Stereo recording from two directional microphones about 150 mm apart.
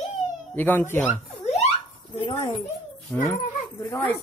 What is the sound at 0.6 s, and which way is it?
Speech, 15° left (ahead or behind).